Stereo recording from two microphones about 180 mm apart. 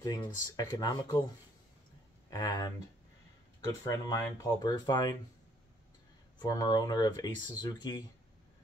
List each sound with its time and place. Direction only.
0.2 s speech: 20° left (ahead or behind)
2.2 s speech: 20° left (ahead or behind)
6.4 s speech: 20° left (ahead or behind)